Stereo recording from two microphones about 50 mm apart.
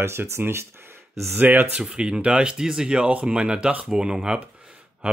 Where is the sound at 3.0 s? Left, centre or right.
Right.